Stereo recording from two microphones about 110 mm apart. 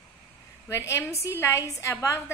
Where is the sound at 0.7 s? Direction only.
25° left (ahead or behind).